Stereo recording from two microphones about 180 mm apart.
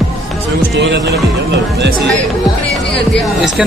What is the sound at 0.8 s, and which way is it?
Speech, 75° right (ahead or behind).